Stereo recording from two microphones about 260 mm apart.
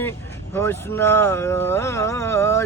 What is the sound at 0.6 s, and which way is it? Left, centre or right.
Speech, centre.